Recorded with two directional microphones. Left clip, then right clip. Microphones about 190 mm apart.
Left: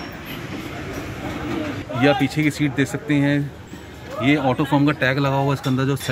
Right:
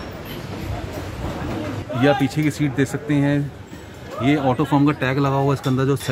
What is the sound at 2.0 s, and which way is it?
Speech, 10° right (ahead or behind).